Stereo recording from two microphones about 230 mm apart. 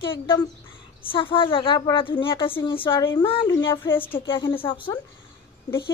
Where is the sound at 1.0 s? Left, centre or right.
Left.